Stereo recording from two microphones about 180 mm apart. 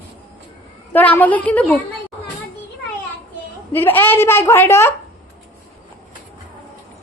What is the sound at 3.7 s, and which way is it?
A woman's voice, 10° left (ahead or behind).